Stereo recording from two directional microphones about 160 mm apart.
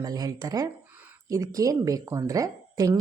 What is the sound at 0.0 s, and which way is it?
A woman's voice, 20° right (ahead or behind).